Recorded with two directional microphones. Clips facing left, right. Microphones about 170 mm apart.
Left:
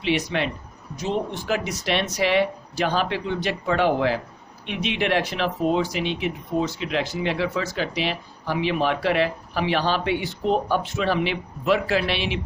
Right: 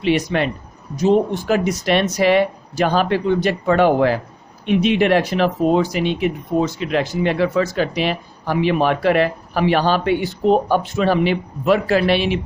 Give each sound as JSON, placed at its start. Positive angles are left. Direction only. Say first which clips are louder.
{"t": 0.0, "sound": "speech", "louder": "right 6 dB", "side_deg": -50}